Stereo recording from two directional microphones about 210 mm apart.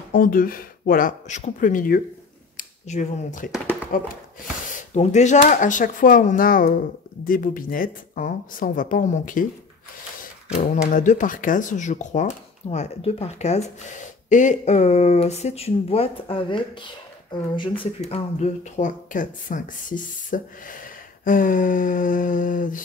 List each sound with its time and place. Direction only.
0.1 s speech: 40° left (ahead or behind)
10.7 s speech: 35° left (ahead or behind)